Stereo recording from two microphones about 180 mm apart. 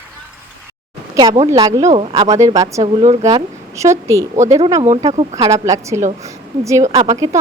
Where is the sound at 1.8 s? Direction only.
30° right (ahead or behind).